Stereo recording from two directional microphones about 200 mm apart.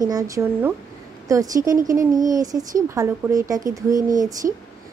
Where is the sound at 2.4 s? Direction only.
20° right (ahead or behind).